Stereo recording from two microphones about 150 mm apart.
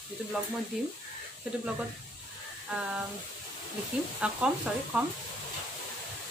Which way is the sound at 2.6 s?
5° right (ahead or behind).